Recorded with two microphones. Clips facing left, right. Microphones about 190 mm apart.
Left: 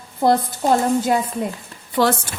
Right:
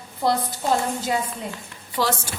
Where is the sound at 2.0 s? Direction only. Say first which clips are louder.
Left 6 dB; 55° left (ahead or behind).